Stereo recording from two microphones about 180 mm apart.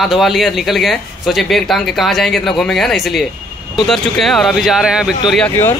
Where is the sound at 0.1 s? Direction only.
Centre (ahead or behind).